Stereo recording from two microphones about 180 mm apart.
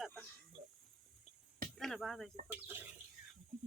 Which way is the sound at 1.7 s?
Centre (ahead or behind).